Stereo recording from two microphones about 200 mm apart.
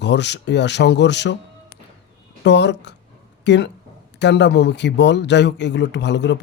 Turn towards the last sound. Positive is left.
turn(degrees=60)  # may be behind; listen again after turning